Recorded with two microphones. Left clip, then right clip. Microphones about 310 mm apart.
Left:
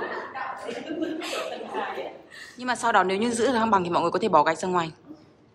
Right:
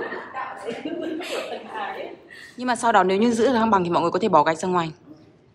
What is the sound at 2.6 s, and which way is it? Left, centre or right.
A woman's voice, centre.